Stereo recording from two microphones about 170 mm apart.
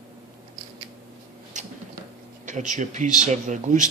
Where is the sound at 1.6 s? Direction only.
45° right (ahead or behind).